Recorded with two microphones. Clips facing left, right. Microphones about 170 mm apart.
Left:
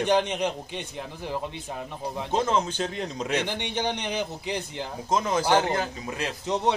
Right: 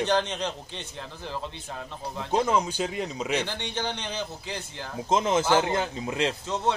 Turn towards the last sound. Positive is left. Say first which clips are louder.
# left 2 dB
turn(degrees=15)  # may be behind; listen again after turning